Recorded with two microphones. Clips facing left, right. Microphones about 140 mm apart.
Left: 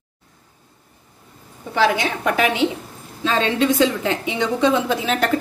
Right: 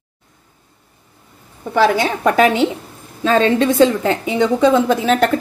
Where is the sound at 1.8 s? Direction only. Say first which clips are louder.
Right 4 dB; 40° right (ahead or behind).